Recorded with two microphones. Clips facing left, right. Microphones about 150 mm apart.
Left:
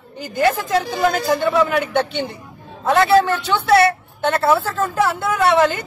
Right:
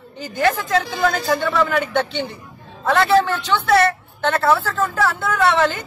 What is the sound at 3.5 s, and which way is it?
A woman's voice, 15° left (ahead or behind).